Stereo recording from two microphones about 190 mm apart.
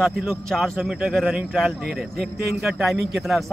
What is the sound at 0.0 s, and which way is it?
Speech, centre (ahead or behind).